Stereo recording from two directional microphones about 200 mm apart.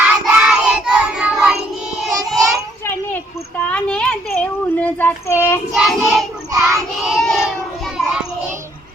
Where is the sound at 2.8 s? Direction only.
10° left (ahead or behind).